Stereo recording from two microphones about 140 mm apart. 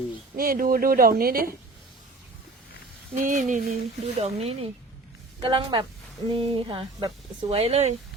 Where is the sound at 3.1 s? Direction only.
70° right (ahead or behind); by 3.8 s 90° right.